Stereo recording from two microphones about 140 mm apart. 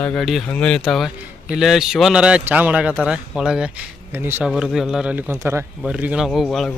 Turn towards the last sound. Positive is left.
turn(degrees=0)  # may be behind; listen again after turning